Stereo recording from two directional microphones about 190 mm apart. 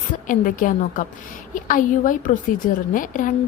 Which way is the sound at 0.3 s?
45° left (ahead or behind).